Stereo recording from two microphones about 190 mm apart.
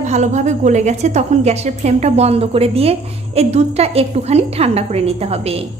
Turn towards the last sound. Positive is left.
turn(degrees=-30)  # may be behind; listen again after turning